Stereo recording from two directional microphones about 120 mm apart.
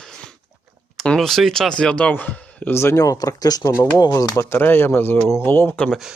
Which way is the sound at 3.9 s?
30° left (ahead or behind).